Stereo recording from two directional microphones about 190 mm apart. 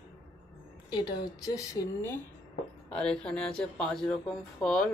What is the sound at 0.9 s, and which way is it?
Speech, 20° left (ahead or behind).